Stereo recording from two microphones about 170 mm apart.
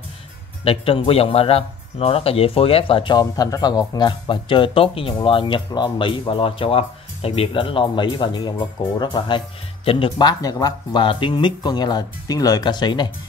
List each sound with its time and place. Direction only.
0.7 s speech: 35° left (ahead or behind)